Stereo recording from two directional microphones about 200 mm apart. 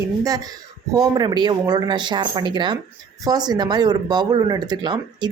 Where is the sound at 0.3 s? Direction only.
20° right (ahead or behind).